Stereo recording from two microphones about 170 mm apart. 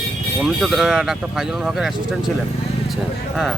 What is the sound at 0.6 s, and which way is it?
Speech, centre (ahead or behind).